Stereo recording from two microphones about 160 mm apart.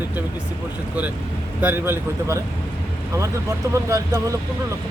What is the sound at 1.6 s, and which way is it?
Speech, 10° right (ahead or behind).